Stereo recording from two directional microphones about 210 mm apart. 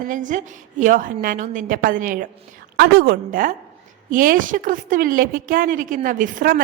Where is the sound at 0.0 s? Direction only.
40° right (ahead or behind).